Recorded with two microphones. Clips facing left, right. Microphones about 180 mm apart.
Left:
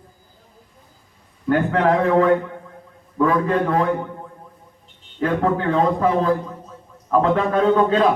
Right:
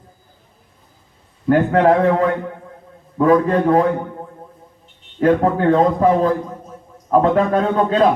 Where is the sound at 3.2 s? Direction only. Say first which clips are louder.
Right 4 dB; 40° right (ahead or behind).